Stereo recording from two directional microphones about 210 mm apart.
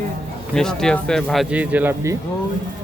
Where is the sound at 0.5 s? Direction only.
5° left (ahead or behind).